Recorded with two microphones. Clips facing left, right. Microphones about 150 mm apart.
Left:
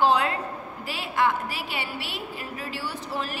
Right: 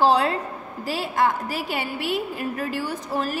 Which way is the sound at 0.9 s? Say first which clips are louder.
Right 3 dB; 40° right (ahead or behind).